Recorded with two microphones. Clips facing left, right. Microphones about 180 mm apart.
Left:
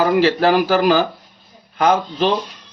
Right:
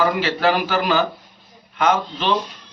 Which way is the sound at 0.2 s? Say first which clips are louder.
Left 5 dB; 40° left (ahead or behind).